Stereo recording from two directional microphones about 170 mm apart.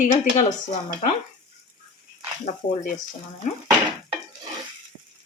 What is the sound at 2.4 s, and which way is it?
Speech, 40° left (ahead or behind).